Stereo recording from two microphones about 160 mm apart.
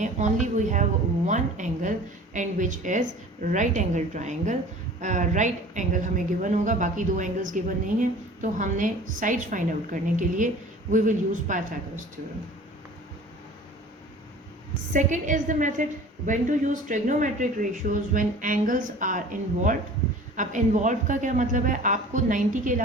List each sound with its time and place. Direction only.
0.0 s a woman's voice: 50° right (ahead or behind)
14.9 s a woman's voice: 50° right (ahead or behind)